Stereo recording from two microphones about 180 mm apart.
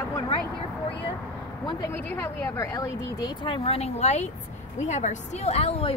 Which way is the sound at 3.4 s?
35° left (ahead or behind).